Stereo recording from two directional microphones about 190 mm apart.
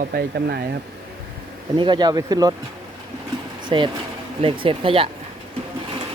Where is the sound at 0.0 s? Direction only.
55° right (ahead or behind).